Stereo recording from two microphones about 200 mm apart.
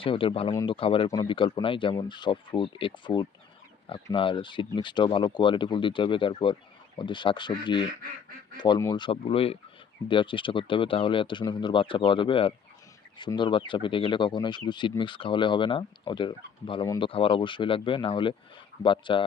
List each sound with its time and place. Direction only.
0.0 s speech: 25° left (ahead or behind)